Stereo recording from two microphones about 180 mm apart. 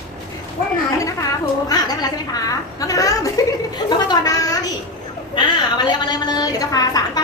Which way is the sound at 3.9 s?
20° left (ahead or behind).